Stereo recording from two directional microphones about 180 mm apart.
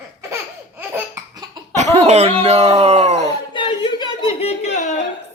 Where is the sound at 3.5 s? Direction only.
25° left (ahead or behind).